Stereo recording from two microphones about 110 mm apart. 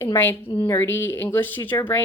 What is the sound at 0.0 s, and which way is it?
A woman's voice, 20° left (ahead or behind).